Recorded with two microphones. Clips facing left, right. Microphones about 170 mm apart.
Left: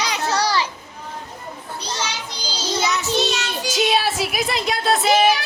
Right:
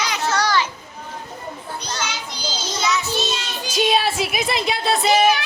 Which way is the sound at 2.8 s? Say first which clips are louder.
Even; 60° left (ahead or behind).